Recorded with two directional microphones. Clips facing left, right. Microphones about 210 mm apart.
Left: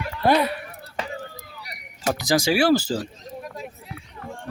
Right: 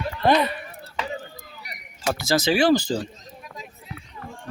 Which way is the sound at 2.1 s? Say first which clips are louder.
Even; 15° left (ahead or behind).